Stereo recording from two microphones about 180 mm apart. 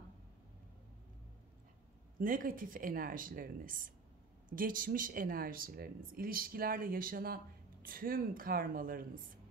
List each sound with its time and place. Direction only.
2.1 s speech: 50° right (ahead or behind)